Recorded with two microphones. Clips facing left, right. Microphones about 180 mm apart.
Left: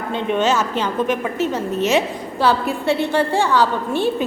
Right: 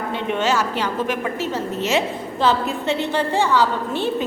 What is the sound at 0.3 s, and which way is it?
A woman's voice, 20° left (ahead or behind).